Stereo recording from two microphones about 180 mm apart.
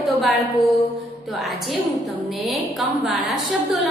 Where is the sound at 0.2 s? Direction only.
Centre (ahead or behind).